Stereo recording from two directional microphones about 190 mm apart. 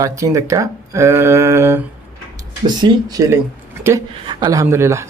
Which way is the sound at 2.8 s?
20° right (ahead or behind).